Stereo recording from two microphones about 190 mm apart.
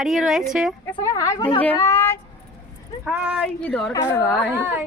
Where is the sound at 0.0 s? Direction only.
Centre (ahead or behind).